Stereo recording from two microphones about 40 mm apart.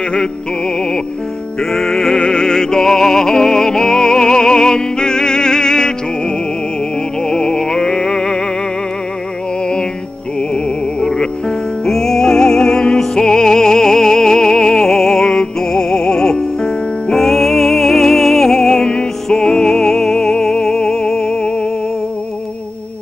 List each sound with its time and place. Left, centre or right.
1.6 s music: centre
10.5 s music: centre